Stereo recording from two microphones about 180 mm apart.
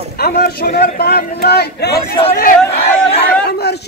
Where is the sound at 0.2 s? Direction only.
60° left (ahead or behind).